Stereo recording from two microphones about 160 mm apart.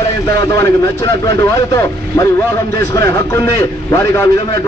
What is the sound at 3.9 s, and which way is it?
Speech, 20° left (ahead or behind).